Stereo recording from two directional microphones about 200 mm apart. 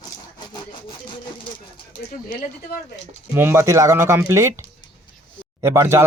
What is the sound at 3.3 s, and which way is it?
Speech, 10° right (ahead or behind).